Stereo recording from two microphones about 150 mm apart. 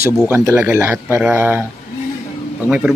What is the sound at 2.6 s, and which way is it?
Speech, 5° right (ahead or behind).